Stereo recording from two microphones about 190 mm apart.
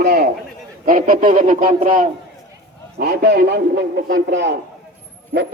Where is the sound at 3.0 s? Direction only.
60° right (ahead or behind).